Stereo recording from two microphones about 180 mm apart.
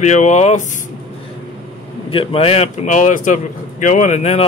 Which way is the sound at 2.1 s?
30° left (ahead or behind).